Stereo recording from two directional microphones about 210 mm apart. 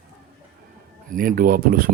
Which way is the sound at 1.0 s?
40° right (ahead or behind).